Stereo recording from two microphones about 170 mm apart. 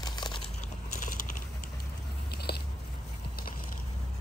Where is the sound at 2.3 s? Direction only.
70° left (ahead or behind).